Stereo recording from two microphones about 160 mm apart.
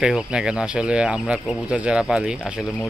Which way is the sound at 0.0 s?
5° right (ahead or behind).